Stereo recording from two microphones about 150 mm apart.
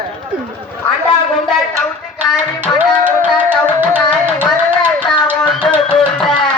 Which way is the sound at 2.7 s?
10° right (ahead or behind).